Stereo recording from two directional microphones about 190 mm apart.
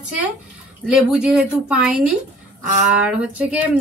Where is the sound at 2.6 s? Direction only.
40° right (ahead or behind).